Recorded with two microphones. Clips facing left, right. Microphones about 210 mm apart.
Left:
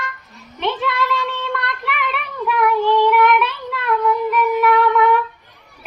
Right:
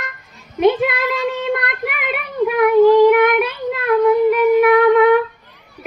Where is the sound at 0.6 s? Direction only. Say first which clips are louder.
Right 6 dB; 45° right (ahead or behind).